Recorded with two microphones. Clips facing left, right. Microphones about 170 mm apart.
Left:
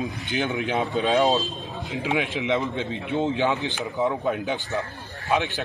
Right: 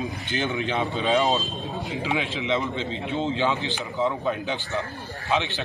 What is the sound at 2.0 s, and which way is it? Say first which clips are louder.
Speech: left 3 dB; 10° left (ahead or behind).